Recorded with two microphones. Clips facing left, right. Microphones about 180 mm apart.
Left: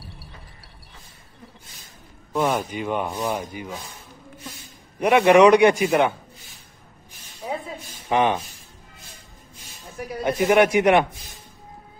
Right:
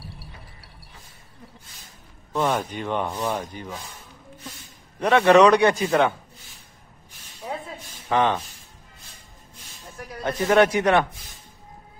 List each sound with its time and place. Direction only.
2.3 s speech: 10° left (ahead or behind)
5.0 s speech: 15° left (ahead or behind)
8.1 s speech: 15° left (ahead or behind)
9.9 s speech: 10° left (ahead or behind)